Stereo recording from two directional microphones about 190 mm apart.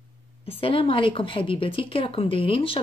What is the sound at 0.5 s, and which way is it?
A woman's voice, 30° left (ahead or behind).